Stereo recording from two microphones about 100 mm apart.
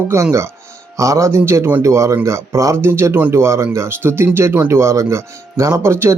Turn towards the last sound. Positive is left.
turn(degrees=-25)  # may be behind; listen again after turning